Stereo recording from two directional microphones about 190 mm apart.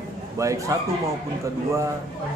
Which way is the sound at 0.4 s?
15° right (ahead or behind).